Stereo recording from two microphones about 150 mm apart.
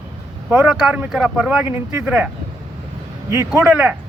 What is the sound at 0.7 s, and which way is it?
Speech, 5° right (ahead or behind).